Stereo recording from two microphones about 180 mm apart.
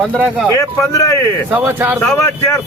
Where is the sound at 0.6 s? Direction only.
15° left (ahead or behind).